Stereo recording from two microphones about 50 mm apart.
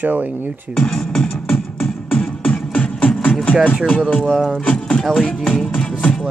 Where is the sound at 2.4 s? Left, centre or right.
Left.